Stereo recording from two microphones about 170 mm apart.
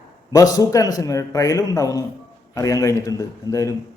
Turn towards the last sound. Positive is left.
turn(degrees=20)  # may be behind; listen again after turning